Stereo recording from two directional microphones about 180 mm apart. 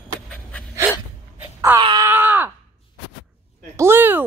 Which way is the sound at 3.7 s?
15° right (ahead or behind).